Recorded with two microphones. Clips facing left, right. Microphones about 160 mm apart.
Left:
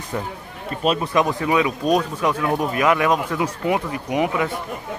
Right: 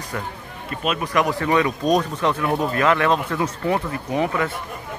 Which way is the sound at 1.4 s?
10° left (ahead or behind).